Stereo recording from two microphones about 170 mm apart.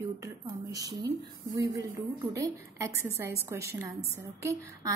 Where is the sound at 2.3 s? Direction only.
20° right (ahead or behind).